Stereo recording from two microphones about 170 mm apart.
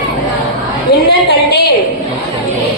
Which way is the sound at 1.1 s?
75° left (ahead or behind).